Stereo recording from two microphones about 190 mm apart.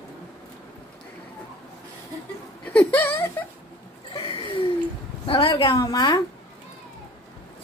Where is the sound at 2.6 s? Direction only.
5° left (ahead or behind).